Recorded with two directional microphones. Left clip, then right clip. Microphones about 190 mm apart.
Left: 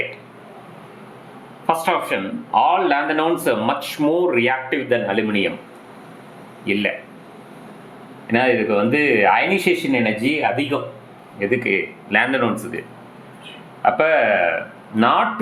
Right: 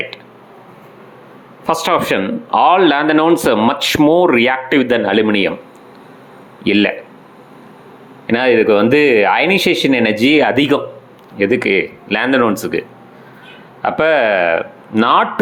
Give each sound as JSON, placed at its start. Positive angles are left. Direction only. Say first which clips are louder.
{"t": 1.6, "sound": "speech", "louder": "right 4 dB", "side_deg": -30}
{"t": 6.7, "sound": "speech", "louder": "right 7 dB", "side_deg": -35}
{"t": 8.3, "sound": "speech", "louder": "right 6 dB", "side_deg": -25}
{"t": 13.8, "sound": "speech", "louder": "right 3 dB", "side_deg": -30}